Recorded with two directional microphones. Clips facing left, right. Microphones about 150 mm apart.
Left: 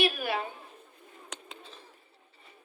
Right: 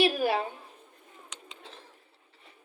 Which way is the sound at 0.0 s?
35° right (ahead or behind).